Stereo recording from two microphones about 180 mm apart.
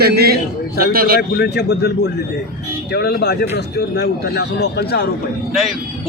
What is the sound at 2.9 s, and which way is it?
Speech, 60° left (ahead or behind).